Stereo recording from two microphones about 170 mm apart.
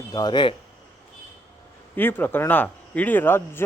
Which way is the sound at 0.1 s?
25° left (ahead or behind).